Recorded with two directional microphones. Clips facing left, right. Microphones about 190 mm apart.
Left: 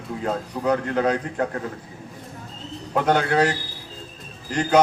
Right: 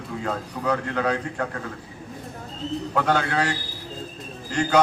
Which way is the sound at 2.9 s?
20° left (ahead or behind).